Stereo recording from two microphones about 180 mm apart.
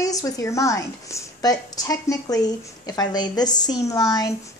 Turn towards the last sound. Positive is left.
turn(degrees=20)  # may be behind; listen again after turning